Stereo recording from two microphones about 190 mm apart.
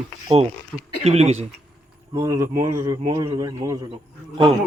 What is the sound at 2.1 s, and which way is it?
A man's voice, 20° right (ahead or behind).